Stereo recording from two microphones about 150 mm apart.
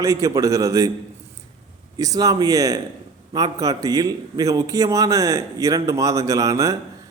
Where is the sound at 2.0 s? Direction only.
25° right (ahead or behind).